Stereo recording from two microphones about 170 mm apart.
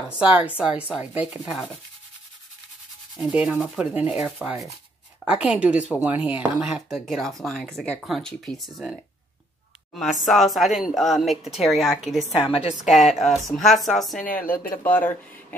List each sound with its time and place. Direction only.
0.4 s a woman's voice: 5° right (ahead or behind)
3.2 s a woman's voice: 5° right (ahead or behind)
10.2 s speech: centre (ahead or behind)
12.4 s a woman's voice: 35° left (ahead or behind)
12.9 s speech: centre (ahead or behind)
14.3 s speech: 10° left (ahead or behind)